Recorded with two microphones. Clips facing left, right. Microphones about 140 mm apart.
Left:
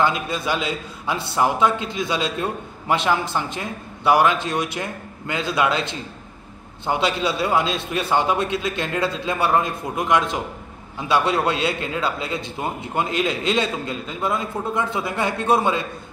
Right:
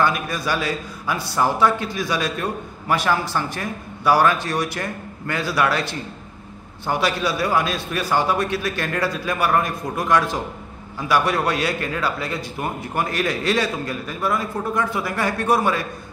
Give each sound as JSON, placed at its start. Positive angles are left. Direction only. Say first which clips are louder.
{"t": 0.0, "sound": "a man's voice", "louder": "even", "side_deg": 20}